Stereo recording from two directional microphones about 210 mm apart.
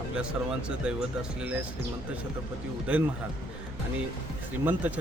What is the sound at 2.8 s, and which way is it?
Speech, 5° right (ahead or behind).